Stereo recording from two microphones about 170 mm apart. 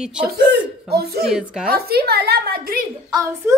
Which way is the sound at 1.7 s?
65° right (ahead or behind).